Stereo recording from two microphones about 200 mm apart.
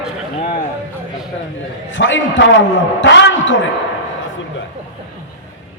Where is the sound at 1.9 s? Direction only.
70° left (ahead or behind).